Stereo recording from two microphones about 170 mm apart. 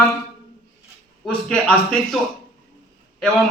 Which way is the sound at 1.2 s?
5° left (ahead or behind).